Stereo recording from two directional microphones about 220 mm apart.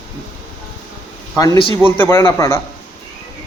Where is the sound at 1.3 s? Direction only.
15° left (ahead or behind).